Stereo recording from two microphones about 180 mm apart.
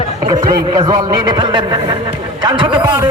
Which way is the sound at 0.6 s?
25° right (ahead or behind).